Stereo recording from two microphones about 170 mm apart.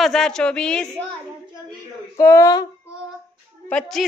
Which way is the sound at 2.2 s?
20° left (ahead or behind).